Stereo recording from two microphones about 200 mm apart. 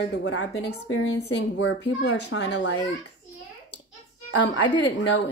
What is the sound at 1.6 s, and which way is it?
Speech, 65° left (ahead or behind).